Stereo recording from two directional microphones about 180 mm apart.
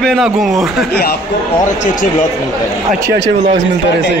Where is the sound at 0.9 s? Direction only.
65° left (ahead or behind).